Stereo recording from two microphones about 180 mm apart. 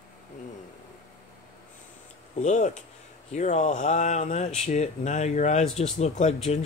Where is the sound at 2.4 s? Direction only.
40° left (ahead or behind).